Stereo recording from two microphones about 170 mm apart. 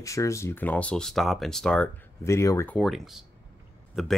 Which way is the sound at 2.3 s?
15° left (ahead or behind).